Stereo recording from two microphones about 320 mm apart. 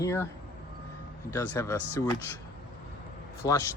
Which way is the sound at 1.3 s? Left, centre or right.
Centre.